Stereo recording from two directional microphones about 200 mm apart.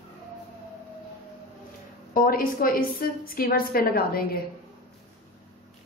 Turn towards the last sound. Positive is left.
turn(degrees=50)  # may be behind; listen again after turning